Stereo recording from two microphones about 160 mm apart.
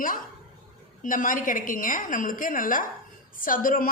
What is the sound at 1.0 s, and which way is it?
A woman's voice, 55° left (ahead or behind).